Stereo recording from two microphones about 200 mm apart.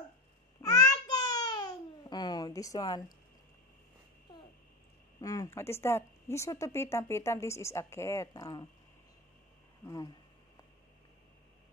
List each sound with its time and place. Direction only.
0.6 s babbling: 20° left (ahead or behind)
5.2 s speech: 15° left (ahead or behind)